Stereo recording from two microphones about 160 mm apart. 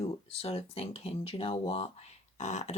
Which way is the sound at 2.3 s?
45° left (ahead or behind).